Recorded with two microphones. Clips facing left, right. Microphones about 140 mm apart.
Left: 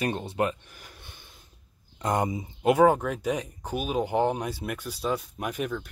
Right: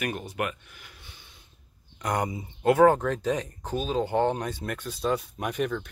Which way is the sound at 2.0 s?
20° left (ahead or behind).